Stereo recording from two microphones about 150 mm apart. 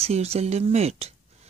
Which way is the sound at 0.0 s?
45° right (ahead or behind).